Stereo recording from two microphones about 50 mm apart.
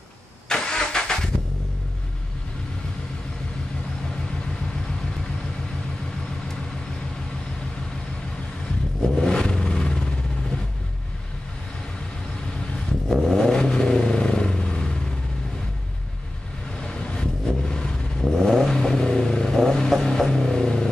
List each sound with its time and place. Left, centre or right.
0.5 s vehicle: centre
9.2 s a sound: centre
13.1 s vehicle: centre
16.8 s vehicle: centre